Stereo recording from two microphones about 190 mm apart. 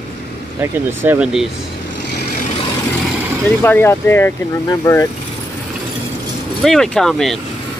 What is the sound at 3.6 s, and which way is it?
Speech, 10° left (ahead or behind).